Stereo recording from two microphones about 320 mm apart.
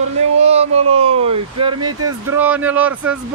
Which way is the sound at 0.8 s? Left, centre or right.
Right.